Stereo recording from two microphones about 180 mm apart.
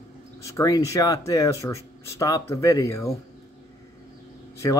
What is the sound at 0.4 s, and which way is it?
Speech, 15° left (ahead or behind).